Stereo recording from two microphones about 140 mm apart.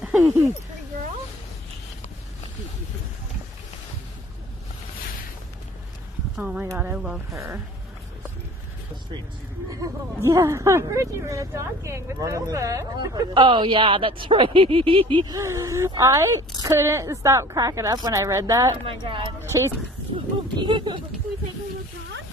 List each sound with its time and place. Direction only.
6.3 s speech: 5° right (ahead or behind)
6.6 s speech: 15° right (ahead or behind)
7.2 s speech: 20° right (ahead or behind)
9.7 s speech: 20° right (ahead or behind)
18.9 s speech: 40° right (ahead or behind)
19.4 s speech: 20° right (ahead or behind)
20.5 s speech: 35° right (ahead or behind)